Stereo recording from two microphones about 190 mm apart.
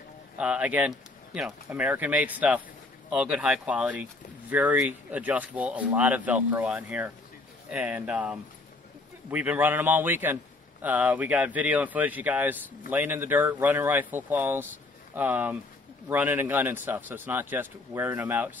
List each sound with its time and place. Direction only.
0.4 s speech: 5° right (ahead or behind)